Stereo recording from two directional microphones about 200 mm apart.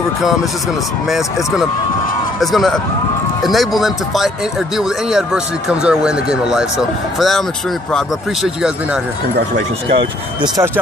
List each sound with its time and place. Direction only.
1.0 s speech: centre (ahead or behind)
9.9 s speech: 20° right (ahead or behind)